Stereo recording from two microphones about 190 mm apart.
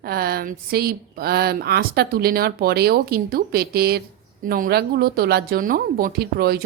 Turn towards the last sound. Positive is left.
turn(degrees=-55)  # may be behind; listen again after turning